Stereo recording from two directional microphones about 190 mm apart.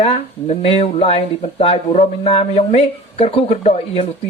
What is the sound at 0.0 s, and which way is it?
Speech, 35° left (ahead or behind).